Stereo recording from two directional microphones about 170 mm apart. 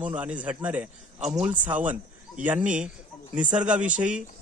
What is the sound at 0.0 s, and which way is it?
Speech, 10° right (ahead or behind).